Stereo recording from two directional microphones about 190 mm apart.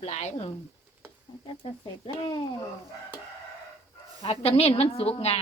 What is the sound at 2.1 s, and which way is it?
Speech, 25° left (ahead or behind).